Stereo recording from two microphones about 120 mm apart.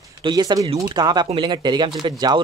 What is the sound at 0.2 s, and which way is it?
Speech, 35° right (ahead or behind).